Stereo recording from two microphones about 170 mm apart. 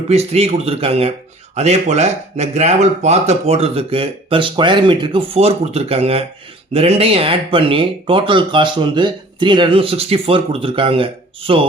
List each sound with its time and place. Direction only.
0.1 s speech: 40° right (ahead or behind)